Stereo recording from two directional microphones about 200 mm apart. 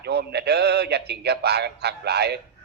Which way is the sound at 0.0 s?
55° right (ahead or behind).